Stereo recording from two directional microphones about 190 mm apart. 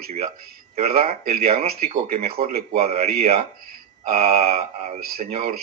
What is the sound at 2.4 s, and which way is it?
Speech, 30° right (ahead or behind).